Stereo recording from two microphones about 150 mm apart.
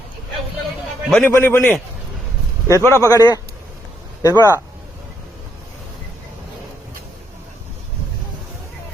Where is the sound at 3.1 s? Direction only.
25° left (ahead or behind).